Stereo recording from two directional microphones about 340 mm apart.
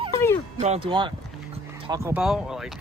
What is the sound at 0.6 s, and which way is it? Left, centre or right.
Speech, centre.